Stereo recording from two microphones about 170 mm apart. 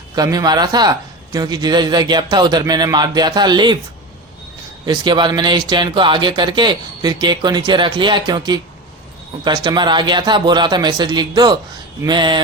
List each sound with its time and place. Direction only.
0.2 s speech: 25° right (ahead or behind)
4.9 s speech: 25° right (ahead or behind)